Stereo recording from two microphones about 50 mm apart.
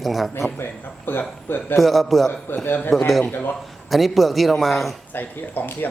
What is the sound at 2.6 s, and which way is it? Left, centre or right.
Speech, left.